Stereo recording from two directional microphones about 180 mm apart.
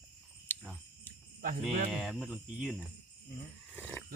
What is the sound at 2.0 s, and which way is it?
Cricket, centre (ahead or behind).